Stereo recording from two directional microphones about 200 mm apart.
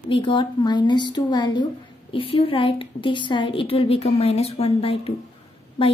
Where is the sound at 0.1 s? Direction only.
25° left (ahead or behind).